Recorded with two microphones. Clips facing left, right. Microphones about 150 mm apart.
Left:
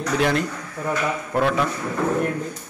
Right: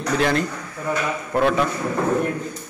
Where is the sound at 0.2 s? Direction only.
5° left (ahead or behind).